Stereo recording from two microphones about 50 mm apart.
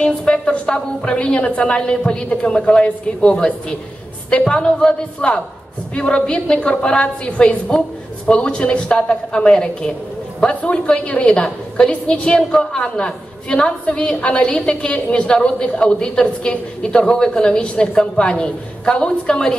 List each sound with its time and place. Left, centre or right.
0.0 s a woman's voice: left